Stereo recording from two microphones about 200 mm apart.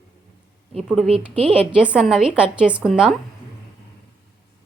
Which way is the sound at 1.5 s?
5° right (ahead or behind).